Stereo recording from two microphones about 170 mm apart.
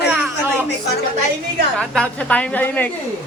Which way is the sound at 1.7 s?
5° left (ahead or behind).